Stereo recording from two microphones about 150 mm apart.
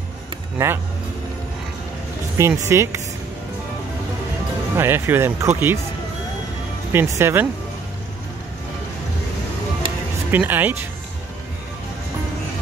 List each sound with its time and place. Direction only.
0.6 s speech: 15° right (ahead or behind)
2.3 s speech: 20° right (ahead or behind)
4.7 s speech: 15° right (ahead or behind)
6.9 s speech: 15° right (ahead or behind)
10.3 s speech: 10° right (ahead or behind)